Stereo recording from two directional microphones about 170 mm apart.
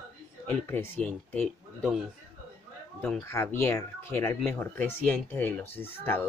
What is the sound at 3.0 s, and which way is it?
Speech, 10° left (ahead or behind).